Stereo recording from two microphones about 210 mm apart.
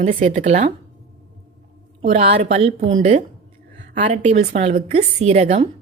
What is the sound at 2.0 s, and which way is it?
Speech, 30° right (ahead or behind).